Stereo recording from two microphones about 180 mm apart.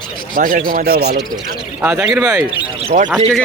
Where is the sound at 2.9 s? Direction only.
45° right (ahead or behind).